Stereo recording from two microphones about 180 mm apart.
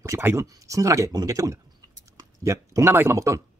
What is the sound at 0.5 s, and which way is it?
Speech, 20° right (ahead or behind).